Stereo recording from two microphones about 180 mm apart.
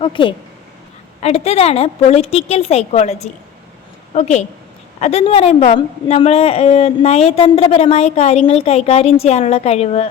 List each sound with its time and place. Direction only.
0.0 s a woman's voice: 30° left (ahead or behind)